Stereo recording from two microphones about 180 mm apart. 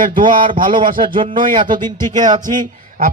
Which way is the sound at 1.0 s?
30° right (ahead or behind).